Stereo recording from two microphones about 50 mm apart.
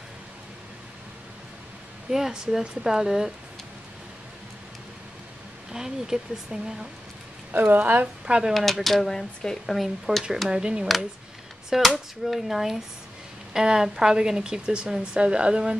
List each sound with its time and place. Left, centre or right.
2.0 s speech: centre
5.7 s speech: centre
7.5 s speech: right
8.3 s speech: centre
8.5 s speech: centre
9.8 s speech: centre
10.5 s speech: centre
11.7 s speech: centre